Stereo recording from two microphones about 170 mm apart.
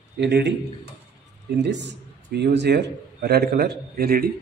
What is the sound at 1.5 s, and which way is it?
A man's voice, 90° right.